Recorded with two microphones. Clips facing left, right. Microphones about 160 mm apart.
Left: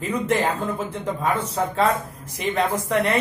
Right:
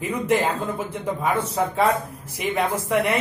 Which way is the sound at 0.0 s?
10° right (ahead or behind).